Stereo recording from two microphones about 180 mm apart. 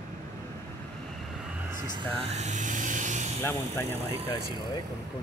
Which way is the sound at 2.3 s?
40° right (ahead or behind).